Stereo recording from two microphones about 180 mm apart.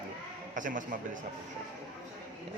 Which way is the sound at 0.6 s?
45° right (ahead or behind).